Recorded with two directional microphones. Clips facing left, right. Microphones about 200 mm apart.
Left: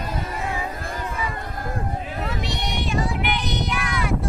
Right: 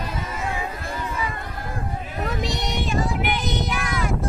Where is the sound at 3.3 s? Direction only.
45° right (ahead or behind).